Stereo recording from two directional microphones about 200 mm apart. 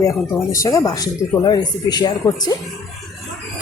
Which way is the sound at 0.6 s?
15° left (ahead or behind).